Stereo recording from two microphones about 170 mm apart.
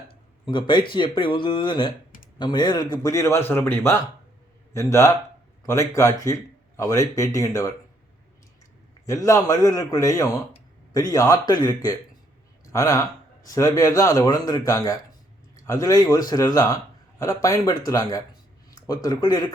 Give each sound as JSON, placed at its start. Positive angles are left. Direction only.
{"t": 0.1, "sound": "speech", "side_deg": 30}
{"t": 9.0, "sound": "speech", "side_deg": 20}